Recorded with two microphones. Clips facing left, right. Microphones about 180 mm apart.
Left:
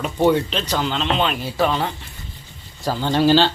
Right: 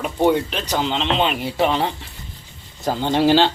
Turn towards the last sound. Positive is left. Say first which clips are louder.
# even
turn(degrees=-15)  # may be behind; listen again after turning